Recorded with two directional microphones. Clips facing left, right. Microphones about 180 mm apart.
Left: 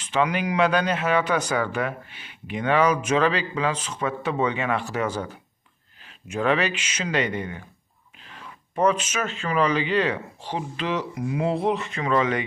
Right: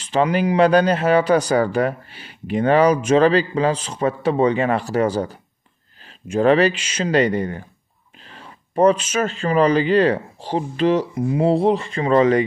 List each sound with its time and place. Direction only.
0.0 s speech: 35° right (ahead or behind)